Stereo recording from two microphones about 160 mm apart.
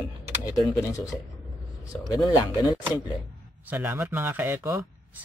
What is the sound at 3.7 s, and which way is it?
Speech, 10° right (ahead or behind).